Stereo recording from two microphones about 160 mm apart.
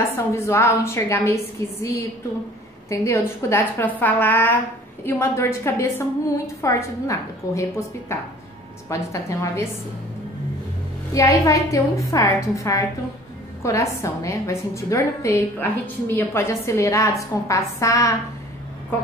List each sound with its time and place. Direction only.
0.1 s a woman's voice: 15° left (ahead or behind)
11.1 s a woman's voice: 20° left (ahead or behind)